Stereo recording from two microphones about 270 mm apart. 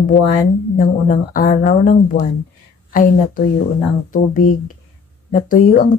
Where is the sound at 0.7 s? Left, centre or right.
Left.